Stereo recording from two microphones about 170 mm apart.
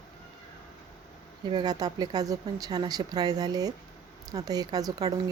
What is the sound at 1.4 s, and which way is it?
A woman's voice, 25° right (ahead or behind).